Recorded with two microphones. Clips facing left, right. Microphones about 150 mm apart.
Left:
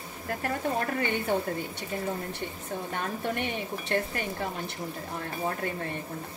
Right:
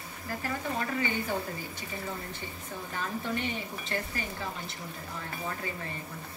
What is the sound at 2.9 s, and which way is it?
Speech, 65° left (ahead or behind).